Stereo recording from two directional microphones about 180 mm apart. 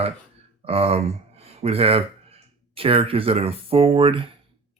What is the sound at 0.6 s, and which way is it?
Speech, 35° right (ahead or behind).